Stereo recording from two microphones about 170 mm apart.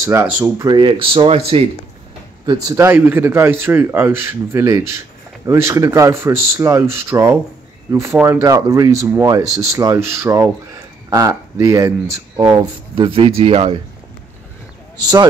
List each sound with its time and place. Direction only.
0.0 s speech: 15° right (ahead or behind)
0.7 s speech: 25° right (ahead or behind)
2.4 s speech: 20° right (ahead or behind)
12.9 s speech: 30° right (ahead or behind)